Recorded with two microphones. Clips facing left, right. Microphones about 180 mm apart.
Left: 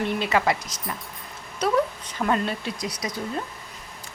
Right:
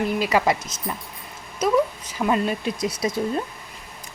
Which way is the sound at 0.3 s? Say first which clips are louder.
Right 2 dB; 20° right (ahead or behind).